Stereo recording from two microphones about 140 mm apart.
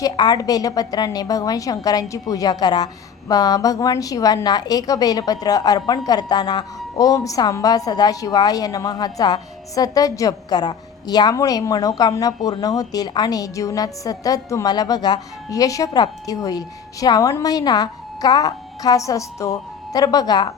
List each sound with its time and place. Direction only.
0.0 s a woman's voice: 25° left (ahead or behind)